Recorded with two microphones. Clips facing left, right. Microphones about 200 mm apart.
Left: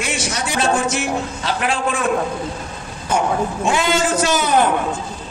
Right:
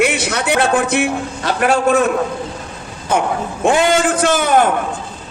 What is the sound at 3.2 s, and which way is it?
A man's voice, 55° right (ahead or behind).